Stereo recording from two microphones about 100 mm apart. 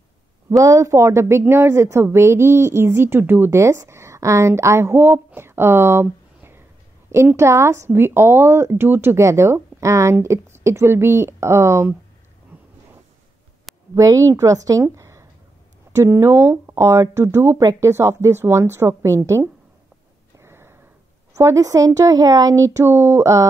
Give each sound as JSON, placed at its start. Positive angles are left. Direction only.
{"t": 0.5, "sound": "a woman's voice", "side_deg": -30}
{"t": 13.9, "sound": "a woman's voice", "side_deg": -35}
{"t": 20.3, "sound": "a sound", "side_deg": -25}
{"t": 21.4, "sound": "speech", "side_deg": -30}